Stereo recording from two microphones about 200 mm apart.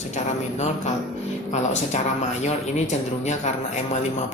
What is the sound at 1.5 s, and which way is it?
A man's voice, 35° left (ahead or behind).